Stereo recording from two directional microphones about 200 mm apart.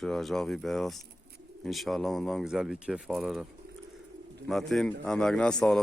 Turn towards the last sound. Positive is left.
turn(degrees=5)  # may be behind; listen again after turning